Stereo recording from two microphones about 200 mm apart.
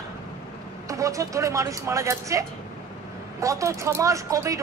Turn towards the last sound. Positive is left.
turn(degrees=-15)  # may be behind; listen again after turning